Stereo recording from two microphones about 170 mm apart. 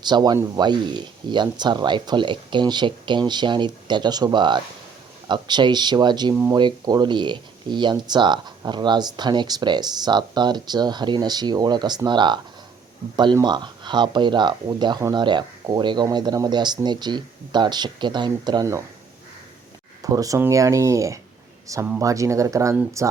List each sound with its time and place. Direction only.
0.0 s speech: 25° right (ahead or behind)
6.3 s speech: 15° right (ahead or behind)
6.6 s speech: 25° right (ahead or behind)
20.0 s speech: 20° right (ahead or behind)